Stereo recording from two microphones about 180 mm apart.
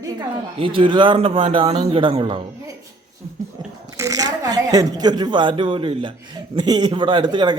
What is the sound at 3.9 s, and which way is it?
A man's voice, 20° right (ahead or behind).